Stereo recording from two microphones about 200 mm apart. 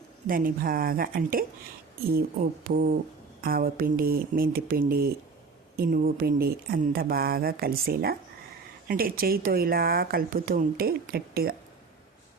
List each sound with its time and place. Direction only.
0.3 s speech: 45° right (ahead or behind)